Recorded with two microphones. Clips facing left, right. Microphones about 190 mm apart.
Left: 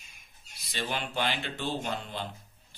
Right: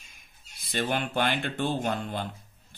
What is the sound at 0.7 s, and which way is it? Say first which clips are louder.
Speech: right 5 dB; 55° right (ahead or behind).